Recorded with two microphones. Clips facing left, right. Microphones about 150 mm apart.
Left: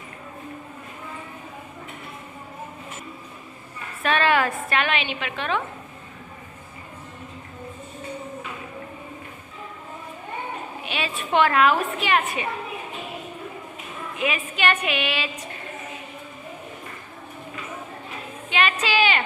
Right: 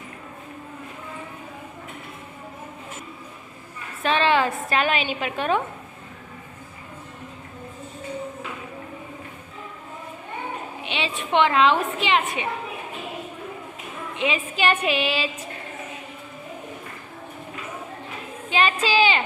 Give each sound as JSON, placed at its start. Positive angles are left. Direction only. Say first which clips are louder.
{"t": 4.0, "sound": "a woman's voice", "louder": "right 1 dB", "side_deg": -30}
{"t": 4.9, "sound": "a woman's voice", "louder": "right 2 dB", "side_deg": -40}
{"t": 10.8, "sound": "a woman's voice", "louder": "right 1 dB", "side_deg": -20}
{"t": 14.2, "sound": "a woman's voice", "louder": "right 1 dB", "side_deg": -25}
{"t": 18.5, "sound": "a woman's voice", "louder": "right 2 dB", "side_deg": -35}